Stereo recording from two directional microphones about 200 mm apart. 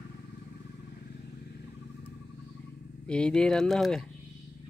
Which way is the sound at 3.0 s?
5° left (ahead or behind).